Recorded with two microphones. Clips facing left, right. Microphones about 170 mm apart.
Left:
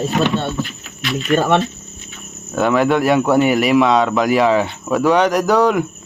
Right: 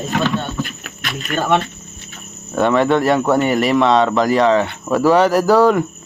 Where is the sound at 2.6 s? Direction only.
Centre (ahead or behind).